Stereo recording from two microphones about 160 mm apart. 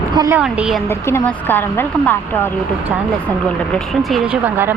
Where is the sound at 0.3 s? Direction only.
5° right (ahead or behind).